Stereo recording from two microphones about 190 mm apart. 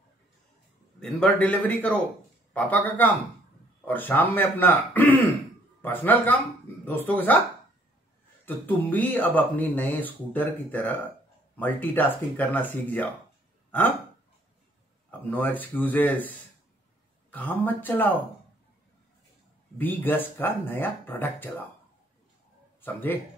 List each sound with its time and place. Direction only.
0.9 s speech: 5° left (ahead or behind)
8.5 s speech: 10° left (ahead or behind)
13.7 s hiccup: 10° left (ahead or behind)
15.0 s speech: 10° left (ahead or behind)
19.8 s speech: 10° left (ahead or behind)
22.8 s a man's voice: 10° left (ahead or behind)